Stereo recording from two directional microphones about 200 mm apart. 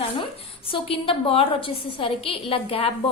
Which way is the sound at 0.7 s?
25° left (ahead or behind).